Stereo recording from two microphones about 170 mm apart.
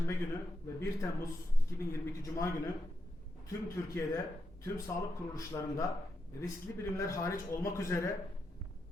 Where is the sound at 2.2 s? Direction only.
15° left (ahead or behind).